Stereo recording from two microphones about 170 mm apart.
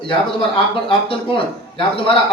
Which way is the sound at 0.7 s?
30° left (ahead or behind).